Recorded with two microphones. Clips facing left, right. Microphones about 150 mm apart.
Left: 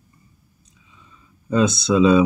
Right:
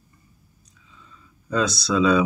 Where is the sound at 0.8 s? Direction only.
15° left (ahead or behind).